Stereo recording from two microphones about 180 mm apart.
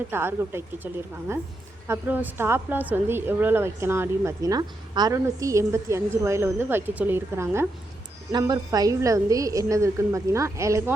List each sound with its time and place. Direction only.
0.1 s a woman's voice: 15° right (ahead or behind)
1.9 s a woman's voice: 10° right (ahead or behind)